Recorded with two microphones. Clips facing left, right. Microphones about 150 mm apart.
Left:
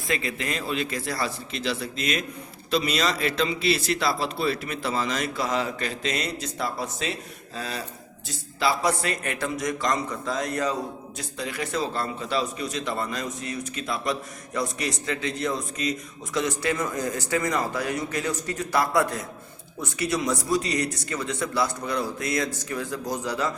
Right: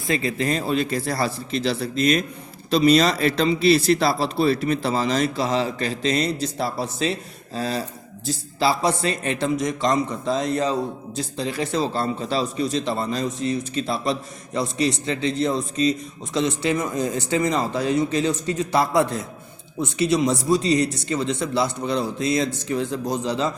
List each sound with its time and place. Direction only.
0.1 s a man's voice: 30° right (ahead or behind)